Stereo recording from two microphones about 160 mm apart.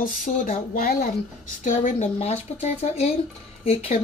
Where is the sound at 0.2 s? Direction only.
60° left (ahead or behind).